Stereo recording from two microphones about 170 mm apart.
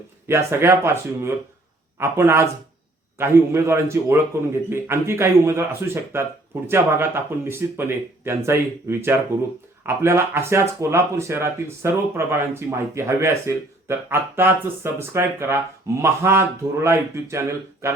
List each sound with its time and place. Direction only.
0.3 s speech: 15° right (ahead or behind)